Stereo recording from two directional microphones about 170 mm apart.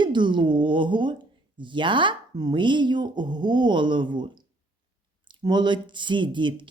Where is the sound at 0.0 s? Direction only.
25° right (ahead or behind).